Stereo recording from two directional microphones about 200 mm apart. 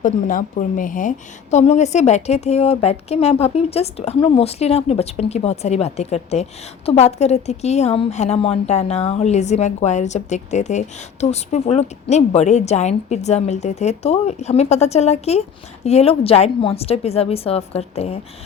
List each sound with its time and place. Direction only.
0.0 s speech: 40° left (ahead or behind)